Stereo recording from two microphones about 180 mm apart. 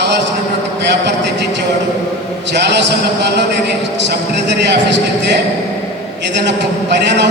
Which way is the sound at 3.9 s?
80° right.